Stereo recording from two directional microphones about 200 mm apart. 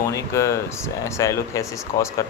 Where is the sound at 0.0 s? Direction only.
15° left (ahead or behind).